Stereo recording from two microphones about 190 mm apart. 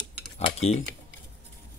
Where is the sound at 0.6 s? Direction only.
35° left (ahead or behind).